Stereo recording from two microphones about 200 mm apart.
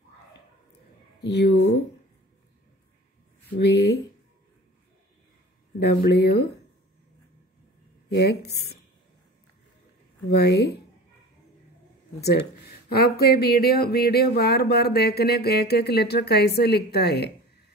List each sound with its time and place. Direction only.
1.3 s speech: 60° left (ahead or behind)
3.5 s speech: 55° left (ahead or behind)
5.8 s speech: 55° left (ahead or behind)
8.1 s speech: 55° left (ahead or behind)
10.3 s speech: 55° left (ahead or behind)
12.2 s speech: 55° left (ahead or behind)